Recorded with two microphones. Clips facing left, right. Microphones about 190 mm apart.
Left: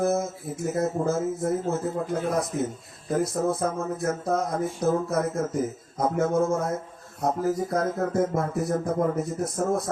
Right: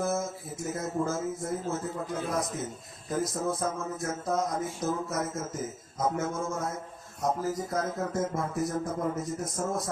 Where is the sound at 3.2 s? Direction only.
60° left (ahead or behind).